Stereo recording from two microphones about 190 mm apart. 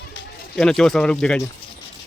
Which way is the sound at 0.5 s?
5° left (ahead or behind).